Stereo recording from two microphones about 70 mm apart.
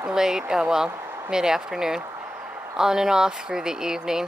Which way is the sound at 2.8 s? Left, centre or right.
Centre.